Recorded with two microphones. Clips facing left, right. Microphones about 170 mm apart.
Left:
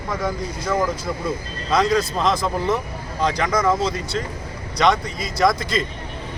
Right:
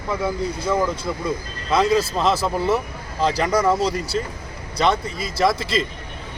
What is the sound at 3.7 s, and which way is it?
Speech, 10° right (ahead or behind).